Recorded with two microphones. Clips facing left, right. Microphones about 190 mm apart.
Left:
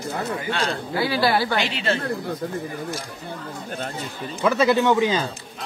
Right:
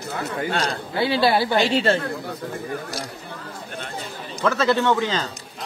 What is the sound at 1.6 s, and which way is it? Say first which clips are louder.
Speech: right 5 dB; 50° right (ahead or behind).